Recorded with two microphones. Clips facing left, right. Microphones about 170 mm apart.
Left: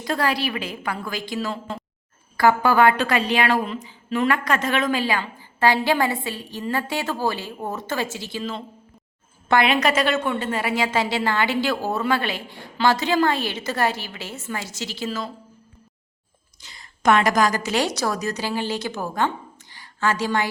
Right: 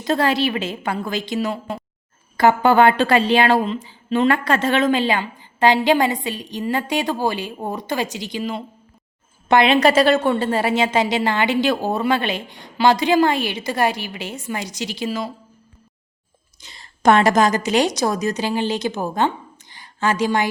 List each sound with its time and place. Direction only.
0.0 s a woman's voice: 25° right (ahead or behind)
16.6 s a woman's voice: 25° right (ahead or behind)
19.7 s a sound: 20° right (ahead or behind)